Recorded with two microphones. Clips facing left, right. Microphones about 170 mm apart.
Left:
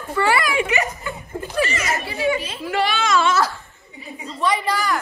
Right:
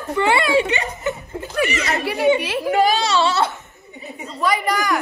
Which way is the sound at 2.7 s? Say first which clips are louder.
Right 2 dB; 40° right (ahead or behind).